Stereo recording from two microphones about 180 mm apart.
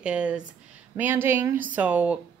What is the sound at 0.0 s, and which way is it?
A woman's voice, 5° right (ahead or behind).